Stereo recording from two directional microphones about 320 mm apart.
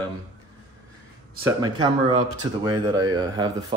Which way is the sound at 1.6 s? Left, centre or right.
Centre.